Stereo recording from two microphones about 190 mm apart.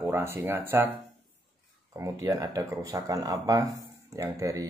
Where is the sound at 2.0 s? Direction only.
15° right (ahead or behind).